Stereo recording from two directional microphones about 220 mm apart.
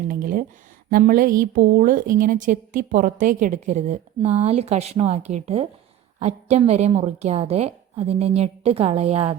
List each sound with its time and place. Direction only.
0.1 s a woman's voice: 40° right (ahead or behind)